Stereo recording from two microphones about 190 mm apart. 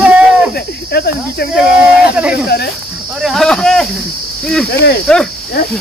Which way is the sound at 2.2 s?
5° right (ahead or behind).